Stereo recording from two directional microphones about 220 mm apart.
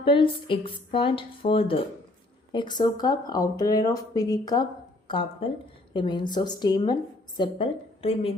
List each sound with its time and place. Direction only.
0.0 s a woman's voice: 25° left (ahead or behind)